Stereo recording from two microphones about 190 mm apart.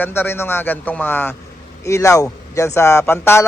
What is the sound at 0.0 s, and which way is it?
A man's voice, 10° left (ahead or behind).